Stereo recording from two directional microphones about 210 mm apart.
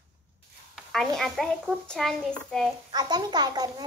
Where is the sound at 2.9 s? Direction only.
20° right (ahead or behind).